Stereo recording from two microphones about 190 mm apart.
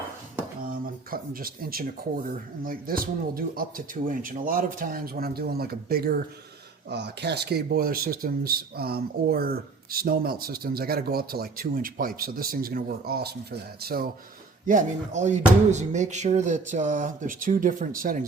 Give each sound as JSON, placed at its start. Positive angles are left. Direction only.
{"t": 1.1, "sound": "speech", "side_deg": -50}
{"t": 14.7, "sound": "speech", "side_deg": -40}